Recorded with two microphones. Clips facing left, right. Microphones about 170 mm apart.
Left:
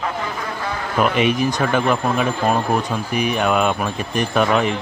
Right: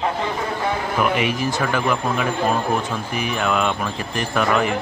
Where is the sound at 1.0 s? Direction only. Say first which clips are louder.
Left 5 dB; 20° left (ahead or behind).